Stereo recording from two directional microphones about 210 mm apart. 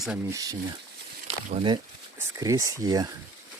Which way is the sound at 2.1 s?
15° right (ahead or behind).